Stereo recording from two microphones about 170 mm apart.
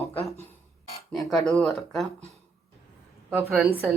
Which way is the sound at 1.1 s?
5° left (ahead or behind).